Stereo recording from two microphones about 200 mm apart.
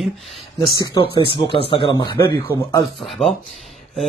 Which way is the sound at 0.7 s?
25° left (ahead or behind).